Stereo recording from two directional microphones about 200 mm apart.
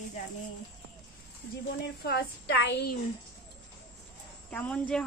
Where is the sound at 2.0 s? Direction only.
55° left (ahead or behind).